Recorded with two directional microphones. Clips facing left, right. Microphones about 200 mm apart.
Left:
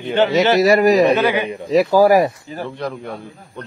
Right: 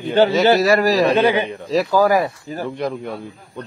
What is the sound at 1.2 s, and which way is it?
Speech, 30° right (ahead or behind).